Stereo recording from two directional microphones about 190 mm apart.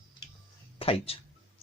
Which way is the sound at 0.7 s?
30° left (ahead or behind).